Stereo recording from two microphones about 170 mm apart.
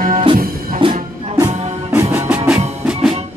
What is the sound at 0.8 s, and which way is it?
Music, 30° right (ahead or behind).